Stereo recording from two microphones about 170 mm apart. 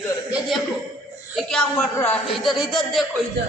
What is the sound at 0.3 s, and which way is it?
A man's voice, 5° right (ahead or behind).